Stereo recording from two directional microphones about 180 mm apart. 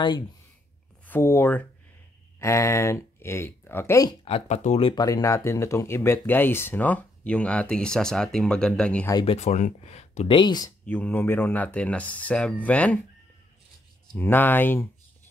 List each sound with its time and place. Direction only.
1.0 s speech: 10° left (ahead or behind); by 5.0 s 30° left (ahead or behind)
5.0 s speech: 20° left (ahead or behind)
9.1 s speech: 30° left (ahead or behind)
10.9 s speech: 10° left (ahead or behind)
14.1 s speech: 10° left (ahead or behind)